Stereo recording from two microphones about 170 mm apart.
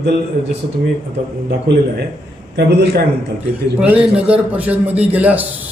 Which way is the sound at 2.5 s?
75° right (ahead or behind).